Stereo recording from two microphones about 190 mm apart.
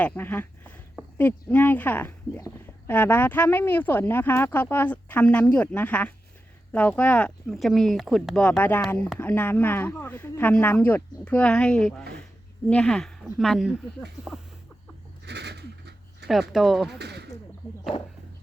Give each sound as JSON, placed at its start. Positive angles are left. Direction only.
{"t": 0.0, "sound": "speech", "side_deg": 10}
{"t": 15.2, "sound": "a sound", "side_deg": -60}
{"t": 16.2, "sound": "speech", "side_deg": 0}
{"t": 17.0, "sound": "speech", "side_deg": -60}